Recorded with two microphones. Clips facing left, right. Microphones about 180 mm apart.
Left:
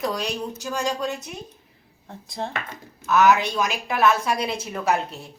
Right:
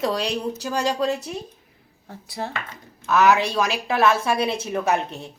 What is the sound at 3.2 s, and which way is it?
Speech, 30° right (ahead or behind).